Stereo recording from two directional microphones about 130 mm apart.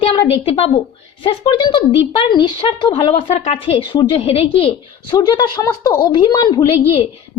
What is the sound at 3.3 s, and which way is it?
Speech, 55° left (ahead or behind).